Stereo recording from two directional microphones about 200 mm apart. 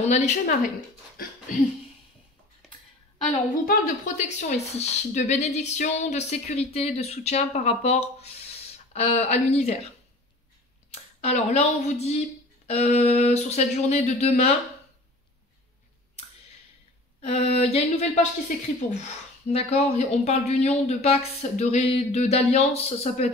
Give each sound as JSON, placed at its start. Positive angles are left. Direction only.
{"t": 0.0, "sound": "speech", "side_deg": 35}
{"t": 2.6, "sound": "a sound", "side_deg": 0}
{"t": 3.6, "sound": "speech", "side_deg": 40}
{"t": 10.9, "sound": "speech", "side_deg": 30}
{"t": 17.2, "sound": "a sound", "side_deg": 30}
{"t": 19.4, "sound": "speech", "side_deg": 30}